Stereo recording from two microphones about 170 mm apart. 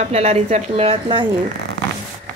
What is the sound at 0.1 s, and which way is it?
A woman's voice, 40° right (ahead or behind).